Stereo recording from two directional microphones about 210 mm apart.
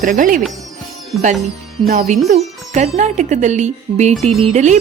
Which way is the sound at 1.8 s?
35° right (ahead or behind).